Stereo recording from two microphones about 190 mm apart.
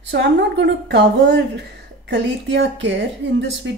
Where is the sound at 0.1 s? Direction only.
65° right (ahead or behind).